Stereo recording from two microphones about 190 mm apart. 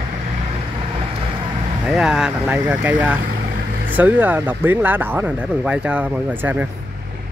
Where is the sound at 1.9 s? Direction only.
5° right (ahead or behind).